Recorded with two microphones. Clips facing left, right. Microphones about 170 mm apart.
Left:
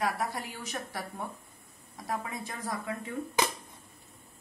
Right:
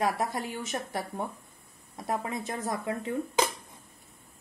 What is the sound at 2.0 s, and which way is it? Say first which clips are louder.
Speech: right 4 dB; 25° right (ahead or behind).